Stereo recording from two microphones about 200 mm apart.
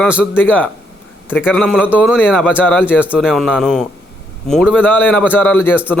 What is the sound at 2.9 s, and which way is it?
A man's voice, 5° right (ahead or behind).